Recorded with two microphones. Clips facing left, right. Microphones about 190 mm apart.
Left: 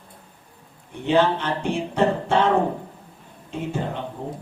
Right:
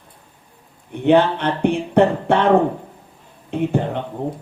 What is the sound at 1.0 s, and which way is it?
Music, 60° right (ahead or behind).